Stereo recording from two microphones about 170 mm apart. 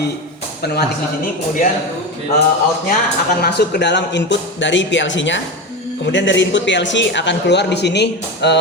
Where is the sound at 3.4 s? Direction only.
70° left (ahead or behind).